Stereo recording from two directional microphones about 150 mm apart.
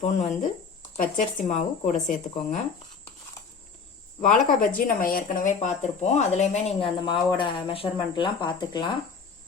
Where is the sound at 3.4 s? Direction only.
20° left (ahead or behind).